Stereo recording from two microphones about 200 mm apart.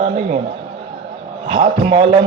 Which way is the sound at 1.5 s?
40° right (ahead or behind).